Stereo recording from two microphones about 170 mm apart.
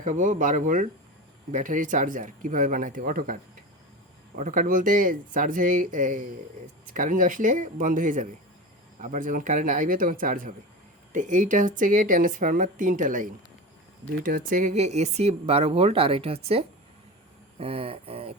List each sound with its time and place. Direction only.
0.0 s speech: 50° right (ahead or behind)
4.4 s speech: 50° right (ahead or behind)
14.3 s speech: 55° right (ahead or behind); by 18.3 s 35° right (ahead or behind)